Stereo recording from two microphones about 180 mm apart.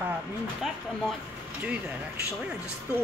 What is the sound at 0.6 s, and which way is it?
Speech, centre (ahead or behind).